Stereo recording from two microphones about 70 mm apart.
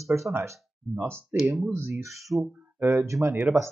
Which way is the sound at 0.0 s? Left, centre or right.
Right.